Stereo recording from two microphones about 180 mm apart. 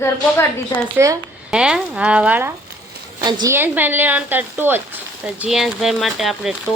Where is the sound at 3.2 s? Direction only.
25° right (ahead or behind).